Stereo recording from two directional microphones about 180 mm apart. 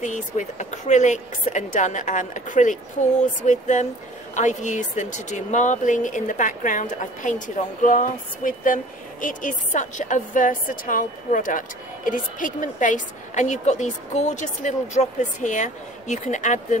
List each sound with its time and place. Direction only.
0.0 s speech: 40° left (ahead or behind)